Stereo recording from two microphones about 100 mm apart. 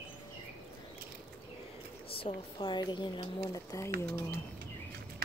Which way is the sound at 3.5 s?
35° left (ahead or behind).